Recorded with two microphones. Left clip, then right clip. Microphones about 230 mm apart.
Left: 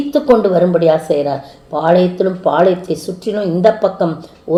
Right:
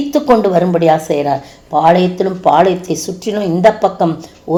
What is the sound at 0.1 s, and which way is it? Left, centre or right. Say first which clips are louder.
A woman's voice: even; right.